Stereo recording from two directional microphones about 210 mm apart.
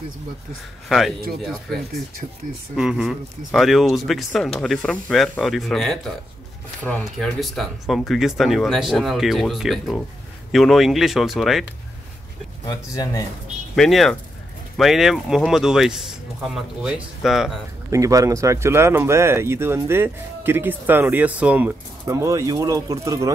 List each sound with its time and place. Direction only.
0.8 s speech: centre (ahead or behind)
12.9 s speech: 15° left (ahead or behind)
13.7 s speech: centre (ahead or behind)
17.9 s speech: 15° right (ahead or behind)